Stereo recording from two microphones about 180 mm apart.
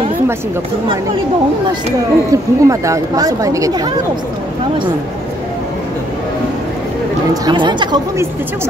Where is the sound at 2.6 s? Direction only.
15° right (ahead or behind).